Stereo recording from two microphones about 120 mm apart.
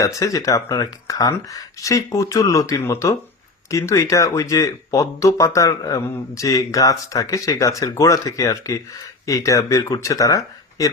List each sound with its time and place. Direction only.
0.0 s speech: 25° left (ahead or behind)